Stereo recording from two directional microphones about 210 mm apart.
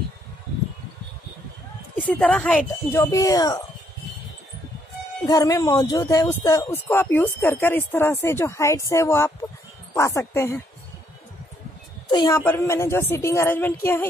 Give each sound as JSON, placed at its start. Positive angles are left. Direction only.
{"t": 2.0, "sound": "speech", "side_deg": 5}
{"t": 5.2, "sound": "speech", "side_deg": 15}
{"t": 12.1, "sound": "a woman's voice", "side_deg": 20}